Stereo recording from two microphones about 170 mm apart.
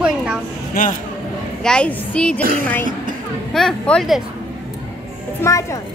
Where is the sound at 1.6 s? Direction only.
5° left (ahead or behind).